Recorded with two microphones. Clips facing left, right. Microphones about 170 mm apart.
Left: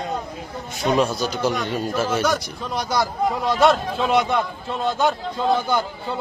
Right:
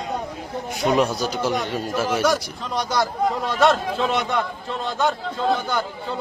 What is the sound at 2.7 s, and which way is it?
A man's voice, 10° left (ahead or behind).